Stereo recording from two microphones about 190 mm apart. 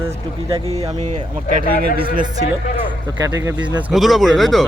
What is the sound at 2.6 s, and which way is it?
Speech, 40° left (ahead or behind).